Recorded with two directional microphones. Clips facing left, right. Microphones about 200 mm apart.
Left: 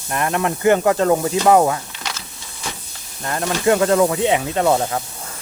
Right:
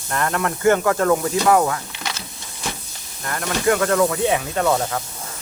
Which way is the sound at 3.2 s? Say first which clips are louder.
Left 2 dB; 25° left (ahead or behind).